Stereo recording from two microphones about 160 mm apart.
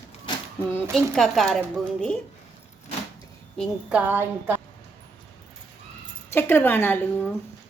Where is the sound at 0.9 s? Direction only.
Centre (ahead or behind).